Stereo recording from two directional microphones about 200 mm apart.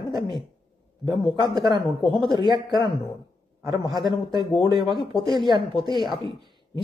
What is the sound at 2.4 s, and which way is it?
Speech, 20° right (ahead or behind).